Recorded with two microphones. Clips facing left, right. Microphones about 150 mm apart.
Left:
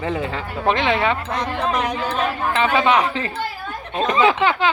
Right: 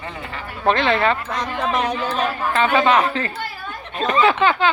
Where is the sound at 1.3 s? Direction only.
25° left (ahead or behind).